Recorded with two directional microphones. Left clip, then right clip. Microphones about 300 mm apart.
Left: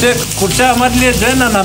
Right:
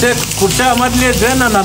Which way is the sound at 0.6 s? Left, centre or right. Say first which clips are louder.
Left 3 dB; centre.